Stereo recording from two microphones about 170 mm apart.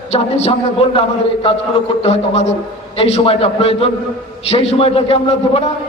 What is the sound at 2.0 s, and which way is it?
A man's voice, 35° left (ahead or behind).